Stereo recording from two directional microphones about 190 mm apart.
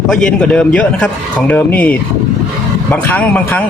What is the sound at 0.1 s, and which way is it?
A man's voice, 5° left (ahead or behind).